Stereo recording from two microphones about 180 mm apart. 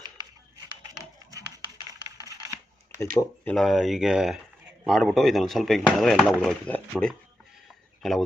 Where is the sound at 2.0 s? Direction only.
20° right (ahead or behind).